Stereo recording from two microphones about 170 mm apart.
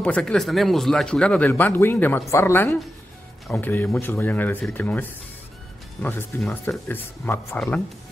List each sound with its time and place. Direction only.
0.0 s speech: 5° left (ahead or behind)
3.4 s a man's voice: centre (ahead or behind)